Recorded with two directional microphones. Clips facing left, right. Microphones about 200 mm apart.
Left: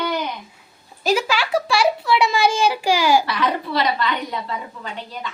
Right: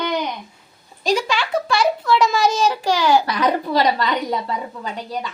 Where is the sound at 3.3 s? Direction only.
40° right (ahead or behind).